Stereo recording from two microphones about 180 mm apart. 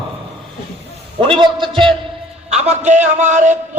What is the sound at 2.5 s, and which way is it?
A man's voice, 40° right (ahead or behind).